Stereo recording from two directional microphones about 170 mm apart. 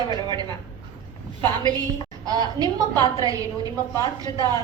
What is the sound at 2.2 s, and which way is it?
A woman's voice, 25° right (ahead or behind).